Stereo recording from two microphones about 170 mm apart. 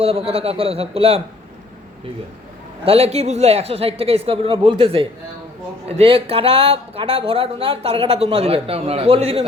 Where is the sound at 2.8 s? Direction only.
35° right (ahead or behind).